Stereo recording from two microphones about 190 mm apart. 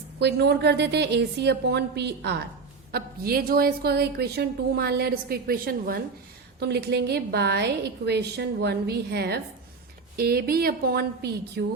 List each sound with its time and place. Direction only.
0.2 s a woman's voice: 60° right (ahead or behind)